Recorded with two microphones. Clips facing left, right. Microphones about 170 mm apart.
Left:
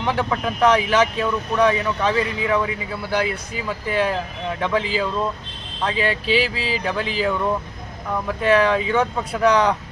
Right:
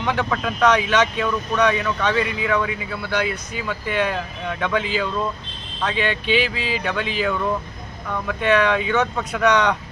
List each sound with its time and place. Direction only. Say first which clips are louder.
0.0 s speech: left 1 dB; 30° left (ahead or behind)